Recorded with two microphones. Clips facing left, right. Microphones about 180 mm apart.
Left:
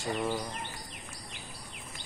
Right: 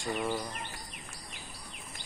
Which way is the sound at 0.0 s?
5° left (ahead or behind).